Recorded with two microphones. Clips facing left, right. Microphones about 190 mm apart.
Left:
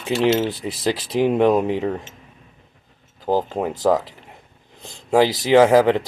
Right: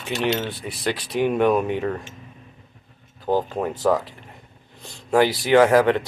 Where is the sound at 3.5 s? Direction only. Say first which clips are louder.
Left 2 dB; 20° left (ahead or behind).